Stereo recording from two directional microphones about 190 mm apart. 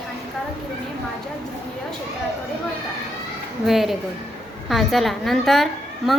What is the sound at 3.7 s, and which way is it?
A woman's voice, centre (ahead or behind).